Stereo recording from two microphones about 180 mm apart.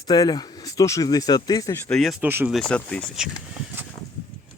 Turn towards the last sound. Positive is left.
turn(degrees=5)  # may be behind; listen again after turning